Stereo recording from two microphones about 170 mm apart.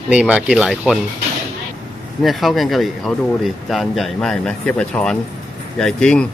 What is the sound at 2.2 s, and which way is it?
Speech, centre (ahead or behind).